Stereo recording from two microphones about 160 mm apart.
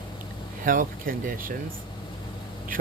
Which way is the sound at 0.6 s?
60° right (ahead or behind).